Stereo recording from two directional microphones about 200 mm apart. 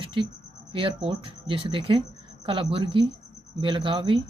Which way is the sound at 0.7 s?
25° right (ahead or behind).